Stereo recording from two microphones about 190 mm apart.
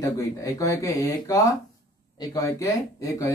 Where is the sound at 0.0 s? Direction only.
15° left (ahead or behind).